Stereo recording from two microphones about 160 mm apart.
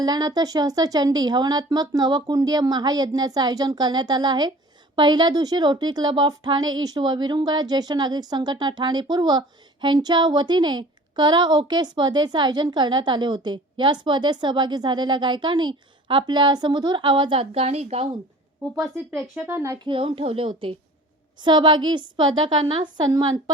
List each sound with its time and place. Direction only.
0.0 s a woman's voice: 25° right (ahead or behind)
19.3 s speech: 10° right (ahead or behind)
19.9 s a woman's voice: 35° right (ahead or behind)